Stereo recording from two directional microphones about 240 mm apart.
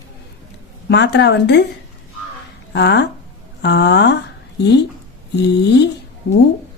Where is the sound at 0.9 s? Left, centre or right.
Left.